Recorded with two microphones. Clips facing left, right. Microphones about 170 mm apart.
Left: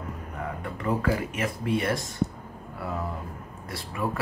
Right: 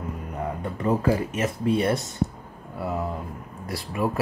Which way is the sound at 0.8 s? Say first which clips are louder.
Right 4 dB; 25° right (ahead or behind).